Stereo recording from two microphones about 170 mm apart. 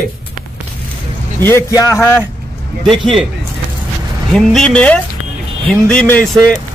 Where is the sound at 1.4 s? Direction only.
15° left (ahead or behind).